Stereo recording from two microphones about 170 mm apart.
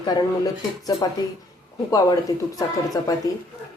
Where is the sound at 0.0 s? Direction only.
25° left (ahead or behind).